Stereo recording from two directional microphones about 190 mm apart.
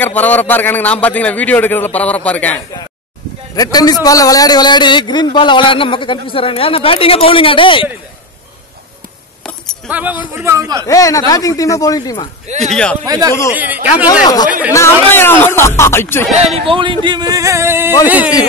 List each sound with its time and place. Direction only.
0.0 s a man's voice: 10° left (ahead or behind)
3.5 s a man's voice: 20° left (ahead or behind)
9.4 s keys jangling: 5° left (ahead or behind)
9.8 s a man's voice: 10° right (ahead or behind)
10.9 s a man's voice: 15° left (ahead or behind)
12.4 s speech: 35° right (ahead or behind)
13.0 s speech: 20° right (ahead or behind)
14.2 s a man's voice: 20° left (ahead or behind)
16.3 s a man's voice: 35° right (ahead or behind); by 18.3 s 10° right (ahead or behind)